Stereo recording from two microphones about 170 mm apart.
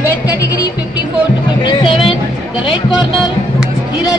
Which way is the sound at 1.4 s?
25° left (ahead or behind).